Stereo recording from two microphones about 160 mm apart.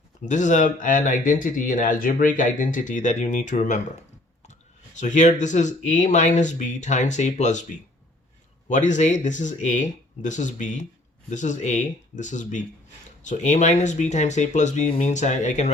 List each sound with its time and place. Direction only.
0.3 s speech: 50° left (ahead or behind)
4.9 s speech: 50° left (ahead or behind)
8.7 s speech: 50° left (ahead or behind)